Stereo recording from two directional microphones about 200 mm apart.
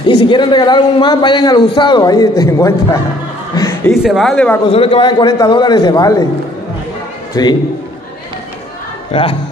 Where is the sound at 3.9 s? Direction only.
Centre (ahead or behind).